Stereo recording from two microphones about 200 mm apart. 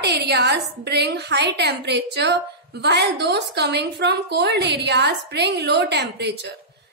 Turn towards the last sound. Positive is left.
turn(degrees=-55)  # may be behind; listen again after turning